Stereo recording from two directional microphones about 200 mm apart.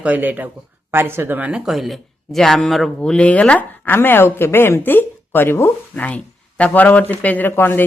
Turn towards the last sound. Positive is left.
turn(degrees=10)  # may be behind; listen again after turning